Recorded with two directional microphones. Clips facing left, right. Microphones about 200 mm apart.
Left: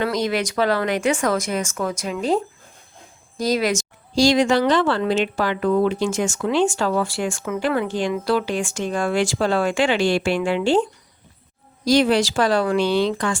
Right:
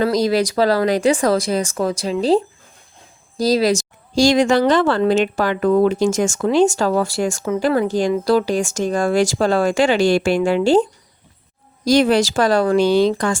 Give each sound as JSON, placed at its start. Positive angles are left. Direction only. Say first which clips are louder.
{"t": 0.0, "sound": "speech", "louder": "right 5 dB", "side_deg": -35}
{"t": 11.9, "sound": "speech", "louder": "right 3 dB", "side_deg": -45}